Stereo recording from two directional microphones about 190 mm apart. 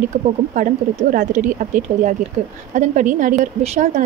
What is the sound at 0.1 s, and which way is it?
Speech, 40° right (ahead or behind).